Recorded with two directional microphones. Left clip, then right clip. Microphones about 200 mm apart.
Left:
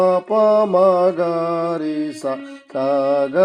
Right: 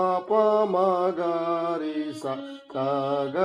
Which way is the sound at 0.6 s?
55° left (ahead or behind).